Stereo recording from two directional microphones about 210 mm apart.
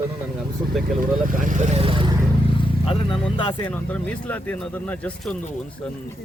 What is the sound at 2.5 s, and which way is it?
Vehicle, 25° left (ahead or behind).